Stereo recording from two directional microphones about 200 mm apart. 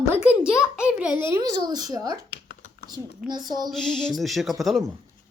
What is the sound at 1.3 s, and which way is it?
Speech, 20° right (ahead or behind).